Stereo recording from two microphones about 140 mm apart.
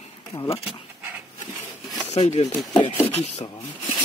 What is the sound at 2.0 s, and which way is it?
Speech, 50° left (ahead or behind).